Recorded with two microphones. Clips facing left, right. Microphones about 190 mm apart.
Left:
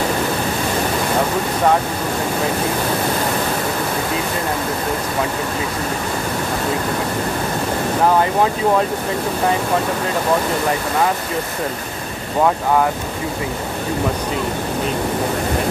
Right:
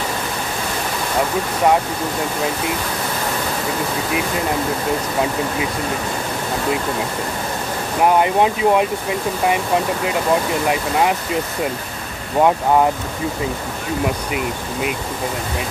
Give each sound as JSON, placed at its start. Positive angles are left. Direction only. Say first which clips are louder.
{"t": 8.2, "sound": "speech", "louder": "right 1 dB", "side_deg": -15}